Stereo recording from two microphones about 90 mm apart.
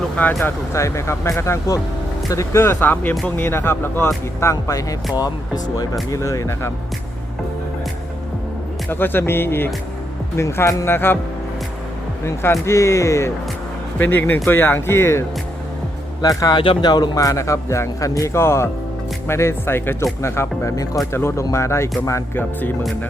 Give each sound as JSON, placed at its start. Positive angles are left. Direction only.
{"t": 0.3, "sound": "speech", "side_deg": 30}
{"t": 8.9, "sound": "speech", "side_deg": 25}
{"t": 12.2, "sound": "speech", "side_deg": 30}
{"t": 14.0, "sound": "speech", "side_deg": 20}
{"t": 16.2, "sound": "speech", "side_deg": 45}
{"t": 16.6, "sound": "speech", "side_deg": 60}